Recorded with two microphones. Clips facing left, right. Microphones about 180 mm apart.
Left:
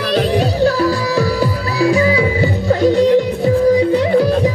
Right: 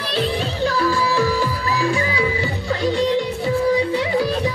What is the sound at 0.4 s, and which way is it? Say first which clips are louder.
Music: left 7 dB; 40° left (ahead or behind).